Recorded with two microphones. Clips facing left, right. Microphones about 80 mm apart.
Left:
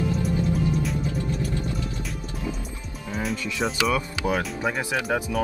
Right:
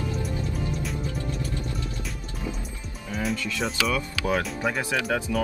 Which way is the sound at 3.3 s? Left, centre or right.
Centre.